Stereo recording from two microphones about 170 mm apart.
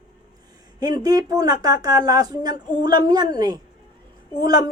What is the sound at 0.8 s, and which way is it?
Speech, 20° right (ahead or behind).